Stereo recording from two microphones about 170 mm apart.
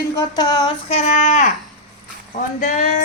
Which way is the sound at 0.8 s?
40° left (ahead or behind).